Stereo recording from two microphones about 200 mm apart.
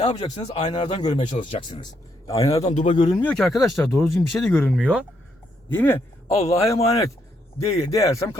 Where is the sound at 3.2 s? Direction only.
5° left (ahead or behind).